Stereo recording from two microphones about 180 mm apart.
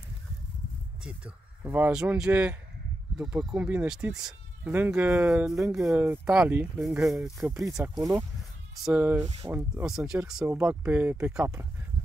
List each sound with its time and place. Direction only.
1.0 s speech: 10° right (ahead or behind)
7.7 s speech: 15° right (ahead or behind)